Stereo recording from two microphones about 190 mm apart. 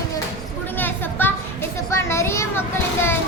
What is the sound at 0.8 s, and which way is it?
A child's voice, 10° left (ahead or behind).